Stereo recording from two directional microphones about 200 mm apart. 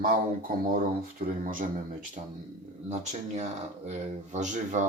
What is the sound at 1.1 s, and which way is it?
Speech, 40° right (ahead or behind).